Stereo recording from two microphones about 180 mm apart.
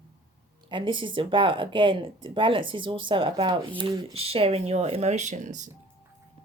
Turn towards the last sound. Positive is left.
turn(degrees=-40)  # may be behind; listen again after turning